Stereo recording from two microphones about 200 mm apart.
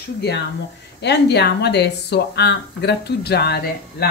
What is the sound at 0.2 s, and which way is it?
Speech, 55° left (ahead or behind).